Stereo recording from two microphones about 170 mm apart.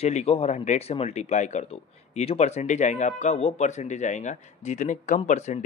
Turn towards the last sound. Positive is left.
turn(degrees=45)  # may be behind; listen again after turning